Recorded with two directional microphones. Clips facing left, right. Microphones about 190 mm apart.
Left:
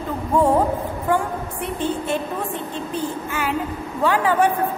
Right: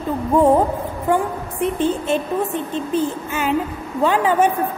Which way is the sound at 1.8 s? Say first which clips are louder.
Right 1 dB; 15° right (ahead or behind).